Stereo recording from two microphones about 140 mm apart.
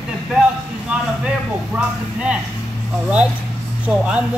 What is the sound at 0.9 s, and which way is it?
Speech, 10° right (ahead or behind).